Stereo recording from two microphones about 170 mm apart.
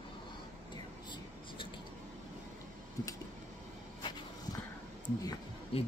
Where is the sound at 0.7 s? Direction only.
25° left (ahead or behind).